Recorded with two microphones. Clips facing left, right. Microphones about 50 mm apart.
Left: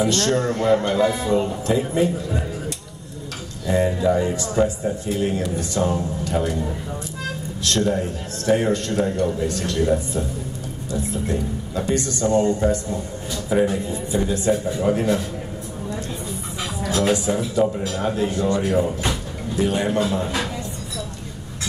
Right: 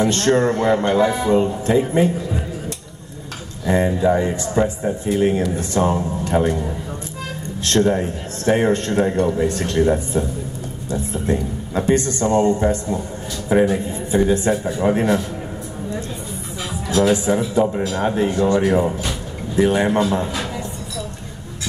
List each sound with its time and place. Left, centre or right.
0.1 s speech: right
3.6 s speech: right
7.6 s speech: right
14.5 s a man's voice: right
14.8 s speech: right
17.1 s speech: right